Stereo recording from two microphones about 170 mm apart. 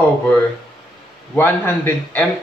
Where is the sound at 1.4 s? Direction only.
10° left (ahead or behind).